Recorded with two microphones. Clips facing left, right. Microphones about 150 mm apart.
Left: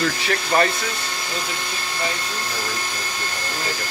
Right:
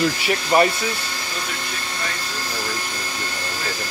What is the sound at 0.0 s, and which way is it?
Speech, 15° right (ahead or behind).